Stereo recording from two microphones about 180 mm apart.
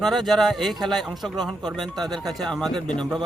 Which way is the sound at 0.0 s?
Centre (ahead or behind).